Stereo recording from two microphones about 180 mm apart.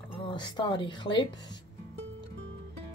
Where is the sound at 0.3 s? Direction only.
25° left (ahead or behind).